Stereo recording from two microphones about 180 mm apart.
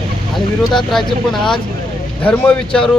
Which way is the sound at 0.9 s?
Centre (ahead or behind).